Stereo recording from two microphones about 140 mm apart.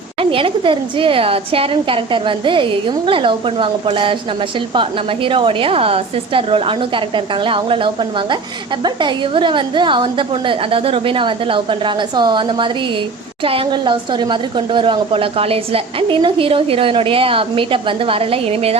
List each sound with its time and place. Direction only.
0.2 s a woman's voice: 40° right (ahead or behind)